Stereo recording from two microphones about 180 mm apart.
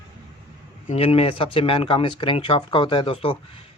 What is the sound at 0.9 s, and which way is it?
Speech, 35° left (ahead or behind).